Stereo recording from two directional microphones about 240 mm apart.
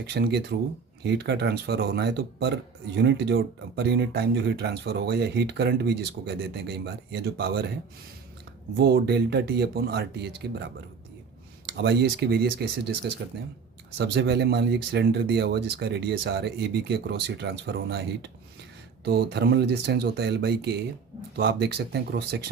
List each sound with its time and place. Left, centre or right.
0.1 s speech: right
8.7 s speech: right
11.8 s speech: right